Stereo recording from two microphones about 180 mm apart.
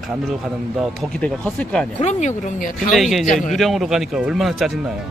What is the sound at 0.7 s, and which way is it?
Speech, 5° left (ahead or behind).